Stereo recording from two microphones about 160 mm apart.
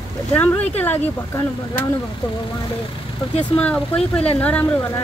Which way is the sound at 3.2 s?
35° left (ahead or behind).